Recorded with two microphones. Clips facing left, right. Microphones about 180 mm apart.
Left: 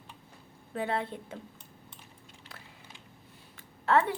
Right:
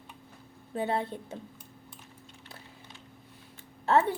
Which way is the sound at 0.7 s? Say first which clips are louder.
Right 2 dB; 25° right (ahead or behind).